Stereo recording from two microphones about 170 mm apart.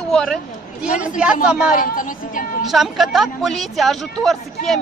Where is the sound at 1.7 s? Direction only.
50° left (ahead or behind).